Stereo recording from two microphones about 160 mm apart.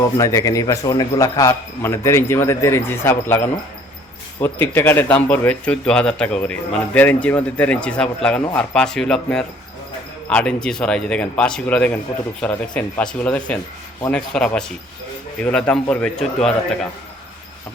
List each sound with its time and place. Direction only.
0.2 s a man's voice: 20° left (ahead or behind); by 16.6 s 5° left (ahead or behind)